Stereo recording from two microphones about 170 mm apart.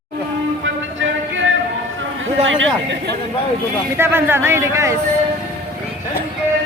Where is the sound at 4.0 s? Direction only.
15° right (ahead or behind).